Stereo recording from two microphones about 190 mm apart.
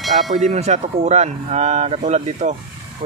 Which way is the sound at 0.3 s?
40° right (ahead or behind).